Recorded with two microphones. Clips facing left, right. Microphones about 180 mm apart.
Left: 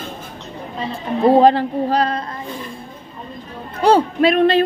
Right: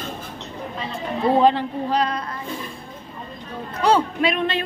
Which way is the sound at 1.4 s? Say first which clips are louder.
Left 5 dB; 35° left (ahead or behind).